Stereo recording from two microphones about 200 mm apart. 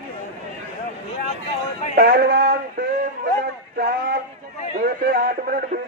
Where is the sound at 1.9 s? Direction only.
50° right (ahead or behind).